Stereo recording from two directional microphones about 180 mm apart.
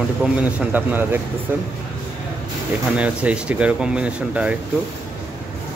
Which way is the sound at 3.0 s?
5° right (ahead or behind).